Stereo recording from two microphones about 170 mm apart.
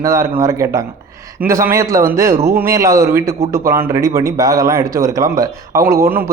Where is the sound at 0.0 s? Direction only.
15° right (ahead or behind).